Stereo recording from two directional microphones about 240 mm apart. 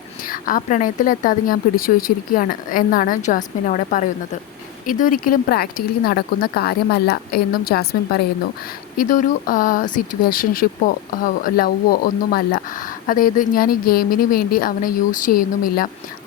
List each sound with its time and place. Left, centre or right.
0.3 s speech: left